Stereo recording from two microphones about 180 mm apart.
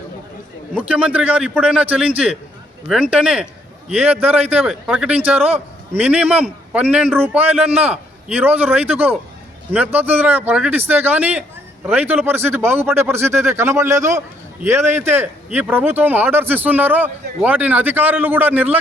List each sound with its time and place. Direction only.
0.7 s speech: 10° right (ahead or behind)